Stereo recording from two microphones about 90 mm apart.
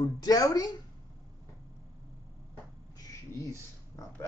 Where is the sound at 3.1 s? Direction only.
40° left (ahead or behind).